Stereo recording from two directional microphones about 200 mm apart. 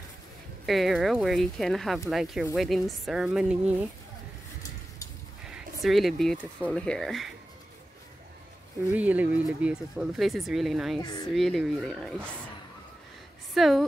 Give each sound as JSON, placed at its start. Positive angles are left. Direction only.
{"t": 0.7, "sound": "speech", "side_deg": 0}
{"t": 5.5, "sound": "speech", "side_deg": 0}
{"t": 8.9, "sound": "speech", "side_deg": -10}
{"t": 11.0, "sound": "speech", "side_deg": 20}
{"t": 11.3, "sound": "speech", "side_deg": 0}
{"t": 13.6, "sound": "speech", "side_deg": 0}